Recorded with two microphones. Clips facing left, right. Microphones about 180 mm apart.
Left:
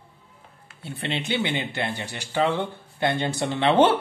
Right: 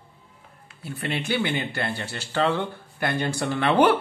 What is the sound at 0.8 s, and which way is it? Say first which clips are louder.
Speech: even; 25° left (ahead or behind).